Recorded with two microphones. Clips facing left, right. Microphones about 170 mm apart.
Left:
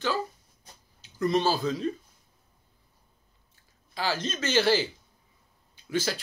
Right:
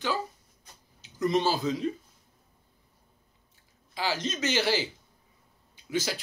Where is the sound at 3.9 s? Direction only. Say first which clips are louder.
Left 1 dB; 15° right (ahead or behind).